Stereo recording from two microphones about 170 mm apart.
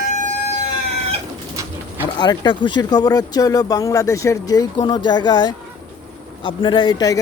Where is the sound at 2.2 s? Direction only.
25° left (ahead or behind).